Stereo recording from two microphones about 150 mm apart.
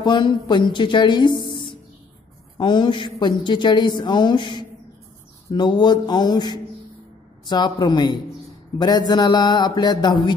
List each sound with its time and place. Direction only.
0.0 s a woman's voice: 30° left (ahead or behind)